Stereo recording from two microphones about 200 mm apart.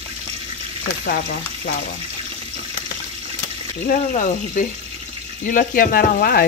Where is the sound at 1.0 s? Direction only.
45° left (ahead or behind).